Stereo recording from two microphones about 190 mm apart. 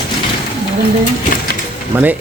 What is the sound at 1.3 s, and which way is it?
Pigeon, 45° left (ahead or behind).